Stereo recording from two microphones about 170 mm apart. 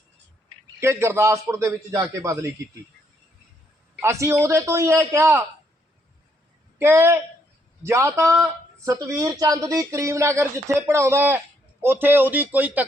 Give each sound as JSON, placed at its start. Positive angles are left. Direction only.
{"t": 0.8, "sound": "a man's voice", "side_deg": -15}
{"t": 4.0, "sound": "a man's voice", "side_deg": -15}
{"t": 6.7, "sound": "a man's voice", "side_deg": -15}